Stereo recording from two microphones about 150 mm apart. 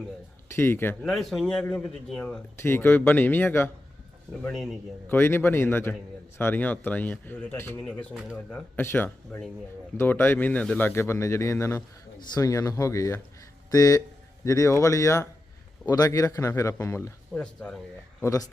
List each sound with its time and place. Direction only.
0.5 s speech: 15° left (ahead or behind)
1.1 s speech: centre (ahead or behind)
4.4 s speech: centre (ahead or behind)
5.0 s a man's voice: 15° left (ahead or behind)
17.4 s speech: 5° left (ahead or behind)